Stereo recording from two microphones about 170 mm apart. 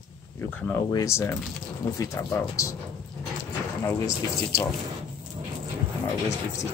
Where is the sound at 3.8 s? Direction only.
20° left (ahead or behind).